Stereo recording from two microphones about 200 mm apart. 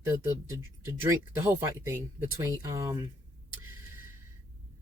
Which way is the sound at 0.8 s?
10° right (ahead or behind).